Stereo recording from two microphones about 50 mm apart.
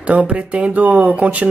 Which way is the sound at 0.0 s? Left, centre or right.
Right.